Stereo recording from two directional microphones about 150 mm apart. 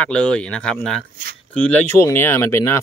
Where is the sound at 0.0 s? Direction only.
5° left (ahead or behind).